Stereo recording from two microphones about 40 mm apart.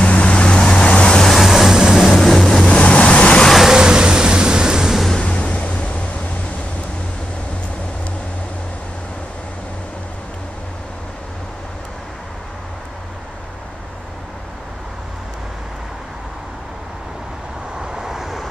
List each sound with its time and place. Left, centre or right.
0.0 s vehicle: left
0.8 s vehicle: left
1.2 s vehicle: centre
2.1 s vehicle: centre
2.7 s vehicle: left
3.7 s vehicle: centre
5.2 s waves: left
17.7 s vehicle: centre